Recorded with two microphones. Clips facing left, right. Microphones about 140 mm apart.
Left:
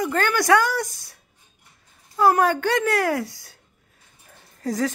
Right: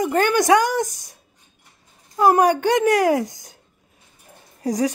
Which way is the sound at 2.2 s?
15° right (ahead or behind).